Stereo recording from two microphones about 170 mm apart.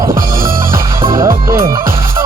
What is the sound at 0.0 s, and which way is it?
Music, 55° right (ahead or behind).